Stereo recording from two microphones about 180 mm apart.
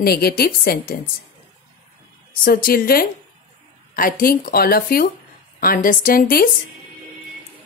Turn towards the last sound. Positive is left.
turn(degrees=55)  # may be behind; listen again after turning